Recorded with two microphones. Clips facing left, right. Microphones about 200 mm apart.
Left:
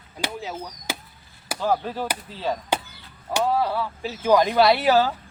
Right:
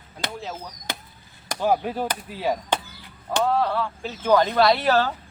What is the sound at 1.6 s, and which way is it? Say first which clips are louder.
Speech: right 2 dB; 15° right (ahead or behind).